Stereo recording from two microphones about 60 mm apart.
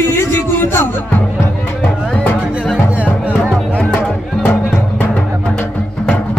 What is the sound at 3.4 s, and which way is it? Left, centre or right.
Music, centre.